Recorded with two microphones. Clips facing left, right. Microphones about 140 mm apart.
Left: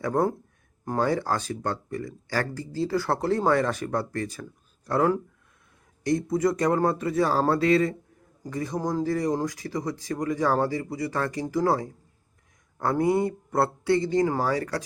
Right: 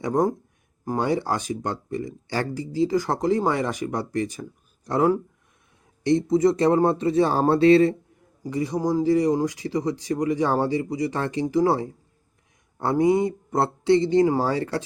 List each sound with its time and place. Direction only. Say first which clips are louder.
0.0 s speech: right 2 dB; 15° right (ahead or behind)
8.4 s speech: right 5 dB; 15° right (ahead or behind)